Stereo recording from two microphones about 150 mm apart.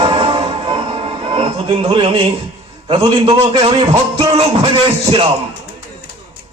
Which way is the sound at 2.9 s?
40° right (ahead or behind).